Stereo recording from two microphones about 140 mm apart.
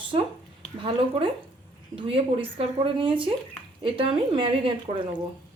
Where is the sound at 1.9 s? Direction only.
40° right (ahead or behind).